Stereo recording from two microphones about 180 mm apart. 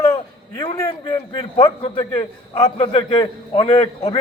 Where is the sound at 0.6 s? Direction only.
25° left (ahead or behind).